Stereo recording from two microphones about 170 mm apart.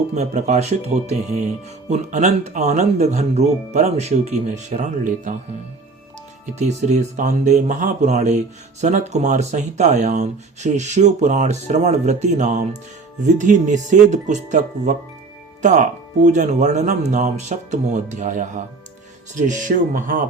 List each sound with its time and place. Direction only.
0.1 s speech: 45° right (ahead or behind)
6.4 s speech: 40° right (ahead or behind)